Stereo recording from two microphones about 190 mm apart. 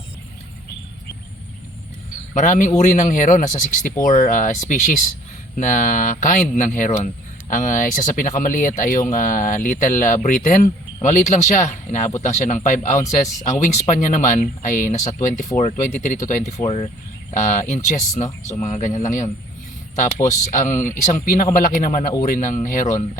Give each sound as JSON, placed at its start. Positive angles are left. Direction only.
{"t": 2.3, "sound": "speech", "side_deg": 40}
{"t": 18.3, "sound": "speech", "side_deg": 15}
{"t": 18.6, "sound": "speech", "side_deg": 40}